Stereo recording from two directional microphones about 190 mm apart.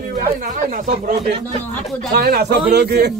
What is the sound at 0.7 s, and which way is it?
Speech, 45° right (ahead or behind).